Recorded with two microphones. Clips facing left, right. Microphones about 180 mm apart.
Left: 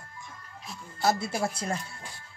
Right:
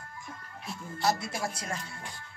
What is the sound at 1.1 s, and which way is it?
Speech, 25° left (ahead or behind).